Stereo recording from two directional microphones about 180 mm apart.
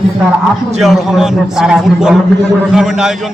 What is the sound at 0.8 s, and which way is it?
A man's voice, centre (ahead or behind).